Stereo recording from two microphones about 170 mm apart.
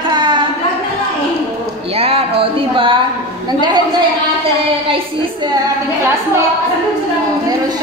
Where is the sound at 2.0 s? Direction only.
35° right (ahead or behind).